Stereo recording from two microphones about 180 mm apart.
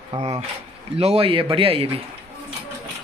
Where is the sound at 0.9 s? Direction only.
35° right (ahead or behind).